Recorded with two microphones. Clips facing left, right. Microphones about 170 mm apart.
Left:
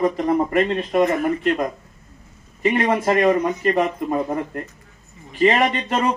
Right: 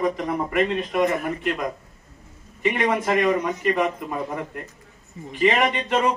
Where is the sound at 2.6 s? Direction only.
35° left (ahead or behind).